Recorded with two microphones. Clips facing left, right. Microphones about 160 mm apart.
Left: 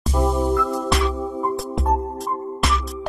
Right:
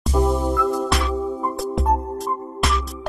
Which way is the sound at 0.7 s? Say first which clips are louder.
Even; centre (ahead or behind).